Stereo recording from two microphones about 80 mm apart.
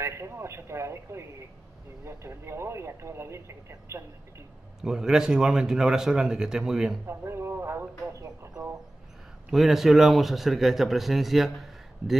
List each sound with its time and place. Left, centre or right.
0.0 s speech: right
4.8 s a man's voice: centre
7.1 s speech: right
9.5 s speech: centre